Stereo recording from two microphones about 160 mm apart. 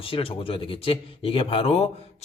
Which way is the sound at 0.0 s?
35° left (ahead or behind).